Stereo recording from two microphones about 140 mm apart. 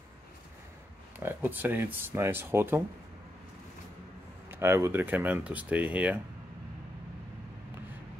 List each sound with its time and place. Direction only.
1.2 s speech: 15° right (ahead or behind)
4.5 s speech: 15° right (ahead or behind)